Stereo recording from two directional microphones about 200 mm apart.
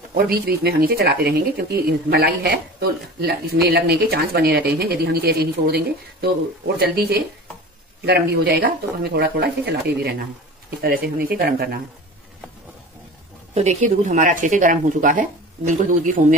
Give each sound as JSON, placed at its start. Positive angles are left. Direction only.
{"t": 0.1, "sound": "speech", "side_deg": -50}
{"t": 13.6, "sound": "speech", "side_deg": -35}